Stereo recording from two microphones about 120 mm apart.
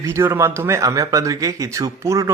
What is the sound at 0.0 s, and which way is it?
Speech, 25° right (ahead or behind).